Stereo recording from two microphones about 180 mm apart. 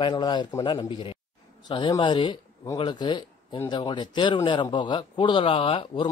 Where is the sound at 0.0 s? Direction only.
25° left (ahead or behind).